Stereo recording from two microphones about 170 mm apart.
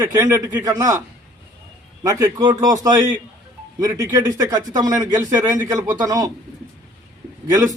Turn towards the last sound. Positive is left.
turn(degrees=-20)  # may be behind; listen again after turning